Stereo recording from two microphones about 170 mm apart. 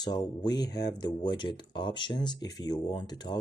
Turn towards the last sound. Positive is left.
turn(degrees=25)  # may be behind; listen again after turning